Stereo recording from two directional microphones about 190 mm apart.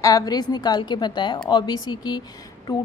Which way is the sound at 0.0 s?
20° left (ahead or behind).